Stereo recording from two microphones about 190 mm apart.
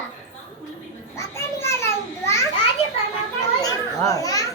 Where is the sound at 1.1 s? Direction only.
15° left (ahead or behind).